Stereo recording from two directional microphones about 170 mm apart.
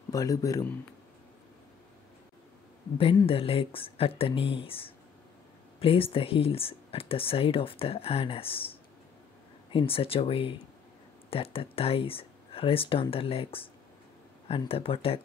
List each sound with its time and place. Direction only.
0.1 s speech: 20° left (ahead or behind)
3.0 s speech: 35° left (ahead or behind)